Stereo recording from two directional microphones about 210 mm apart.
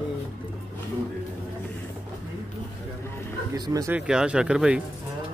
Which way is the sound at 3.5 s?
15° right (ahead or behind).